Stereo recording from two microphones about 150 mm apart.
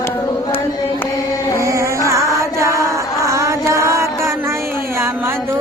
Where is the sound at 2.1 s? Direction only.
20° right (ahead or behind).